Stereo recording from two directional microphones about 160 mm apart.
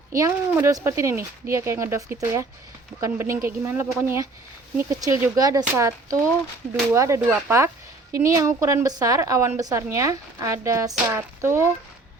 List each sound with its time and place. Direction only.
0.1 s a woman's voice: 20° right (ahead or behind)